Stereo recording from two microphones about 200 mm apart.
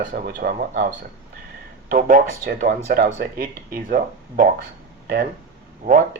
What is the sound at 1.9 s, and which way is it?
Speech, 45° right (ahead or behind).